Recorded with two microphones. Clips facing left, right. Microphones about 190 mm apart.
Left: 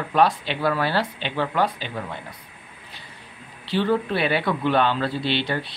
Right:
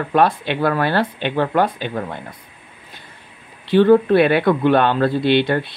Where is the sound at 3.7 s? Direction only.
55° right (ahead or behind).